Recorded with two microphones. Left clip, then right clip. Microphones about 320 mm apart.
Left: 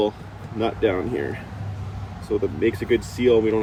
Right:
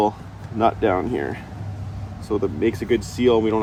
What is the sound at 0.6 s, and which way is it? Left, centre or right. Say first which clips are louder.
Speech: right 3 dB; centre.